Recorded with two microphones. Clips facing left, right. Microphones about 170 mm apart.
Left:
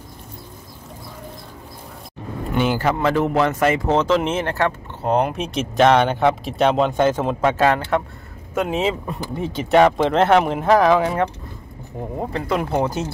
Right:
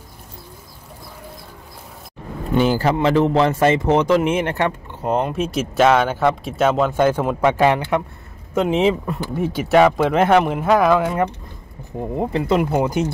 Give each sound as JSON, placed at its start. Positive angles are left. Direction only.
{"t": 2.6, "sound": "speech", "side_deg": -35}
{"t": 3.9, "sound": "speech", "side_deg": -15}
{"t": 5.0, "sound": "speech", "side_deg": 0}
{"t": 9.1, "sound": "speech", "side_deg": -5}
{"t": 12.3, "sound": "speech", "side_deg": -20}